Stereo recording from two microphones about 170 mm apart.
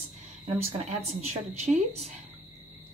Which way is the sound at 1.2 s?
40° right (ahead or behind).